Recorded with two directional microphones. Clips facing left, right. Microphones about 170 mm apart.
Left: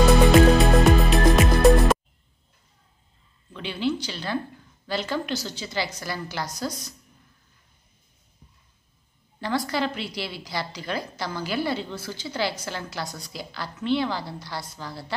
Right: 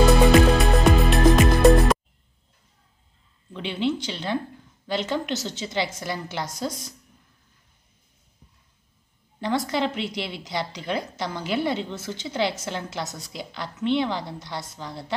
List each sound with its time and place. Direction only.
0.6 s music: centre (ahead or behind)
3.5 s a sound: 25° right (ahead or behind)
4.8 s a woman's voice: 20° right (ahead or behind)
9.4 s a woman's voice: 20° right (ahead or behind)